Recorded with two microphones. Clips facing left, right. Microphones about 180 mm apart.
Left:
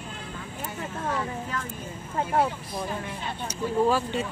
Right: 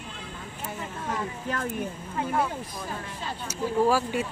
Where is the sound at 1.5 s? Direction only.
55° right (ahead or behind).